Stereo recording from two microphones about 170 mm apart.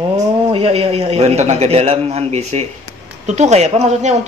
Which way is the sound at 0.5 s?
35° right (ahead or behind).